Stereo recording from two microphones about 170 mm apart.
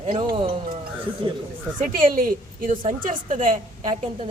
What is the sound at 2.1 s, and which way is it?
A woman's voice, 55° right (ahead or behind).